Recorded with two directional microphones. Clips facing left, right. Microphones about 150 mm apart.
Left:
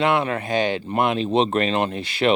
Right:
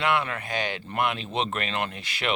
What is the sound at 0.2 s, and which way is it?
Speech, 25° left (ahead or behind).